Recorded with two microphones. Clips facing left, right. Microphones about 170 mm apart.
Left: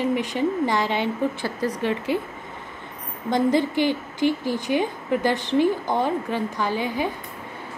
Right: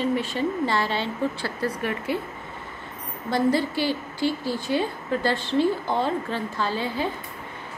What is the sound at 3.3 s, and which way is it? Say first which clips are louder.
A woman's voice: left 2 dB; 20° left (ahead or behind).